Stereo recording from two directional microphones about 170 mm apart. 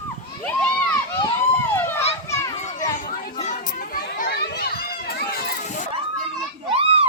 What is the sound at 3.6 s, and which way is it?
Children playing, 55° left (ahead or behind).